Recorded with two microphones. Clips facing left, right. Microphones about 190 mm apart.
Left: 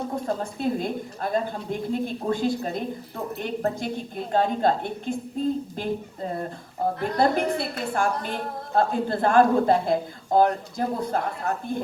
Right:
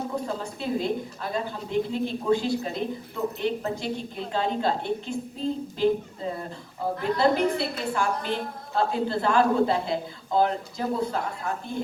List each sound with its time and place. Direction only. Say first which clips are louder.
0.3 s a woman's voice: left 4 dB; 50° left (ahead or behind)
7.0 s a woman's voice: right 1 dB; 50° left (ahead or behind)